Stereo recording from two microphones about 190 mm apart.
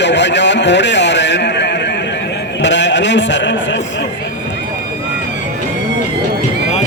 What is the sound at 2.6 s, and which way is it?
Bleat, 70° left (ahead or behind).